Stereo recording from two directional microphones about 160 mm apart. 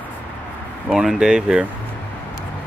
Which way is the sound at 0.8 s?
5° right (ahead or behind).